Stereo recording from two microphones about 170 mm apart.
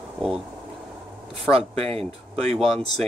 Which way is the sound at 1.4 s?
35° right (ahead or behind).